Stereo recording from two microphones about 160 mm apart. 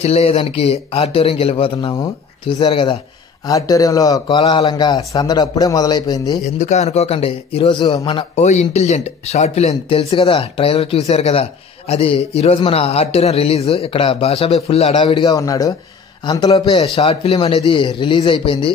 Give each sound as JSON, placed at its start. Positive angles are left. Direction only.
{"t": 0.0, "sound": "a man's voice", "side_deg": 40}
{"t": 6.6, "sound": "a man's voice", "side_deg": 45}
{"t": 8.4, "sound": "a man's voice", "side_deg": 45}